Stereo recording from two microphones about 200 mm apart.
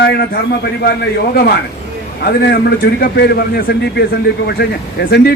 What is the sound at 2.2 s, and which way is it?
A man's voice, 50° left (ahead or behind).